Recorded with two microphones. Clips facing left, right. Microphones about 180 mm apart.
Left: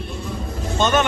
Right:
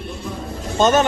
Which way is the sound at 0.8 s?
40° right (ahead or behind).